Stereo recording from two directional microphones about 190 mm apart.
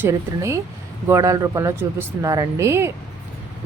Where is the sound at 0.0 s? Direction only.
15° right (ahead or behind).